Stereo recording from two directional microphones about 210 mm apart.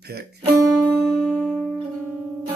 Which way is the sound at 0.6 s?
20° right (ahead or behind).